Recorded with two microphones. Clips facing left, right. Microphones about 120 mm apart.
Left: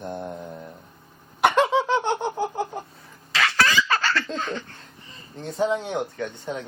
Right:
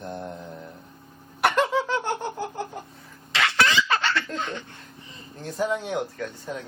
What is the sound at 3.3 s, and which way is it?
Fowl, 25° right (ahead or behind).